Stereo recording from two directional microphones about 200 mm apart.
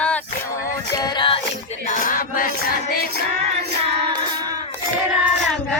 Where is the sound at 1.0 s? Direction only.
20° left (ahead or behind).